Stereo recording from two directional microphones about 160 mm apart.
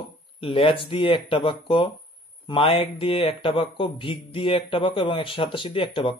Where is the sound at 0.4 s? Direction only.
35° left (ahead or behind).